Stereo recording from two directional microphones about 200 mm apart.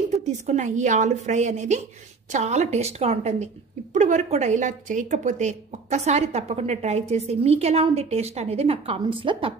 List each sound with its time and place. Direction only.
0.1 s a woman's voice: 35° right (ahead or behind)